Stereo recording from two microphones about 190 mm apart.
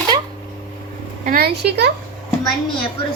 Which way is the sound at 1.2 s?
50° right (ahead or behind).